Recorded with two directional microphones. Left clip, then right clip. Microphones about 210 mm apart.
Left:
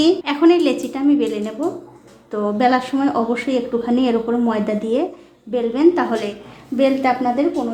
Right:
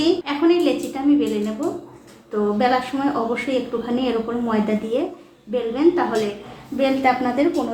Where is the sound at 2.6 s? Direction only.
40° left (ahead or behind).